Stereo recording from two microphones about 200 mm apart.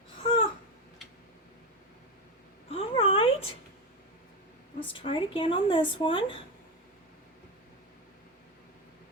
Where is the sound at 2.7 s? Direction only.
30° left (ahead or behind).